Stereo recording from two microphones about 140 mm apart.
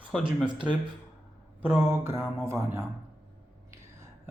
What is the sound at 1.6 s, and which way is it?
A man's voice, 15° right (ahead or behind).